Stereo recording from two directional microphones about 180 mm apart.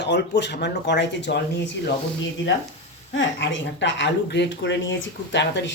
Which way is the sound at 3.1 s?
90° left.